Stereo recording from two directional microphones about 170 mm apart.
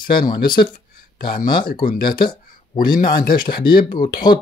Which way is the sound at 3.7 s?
55° left (ahead or behind).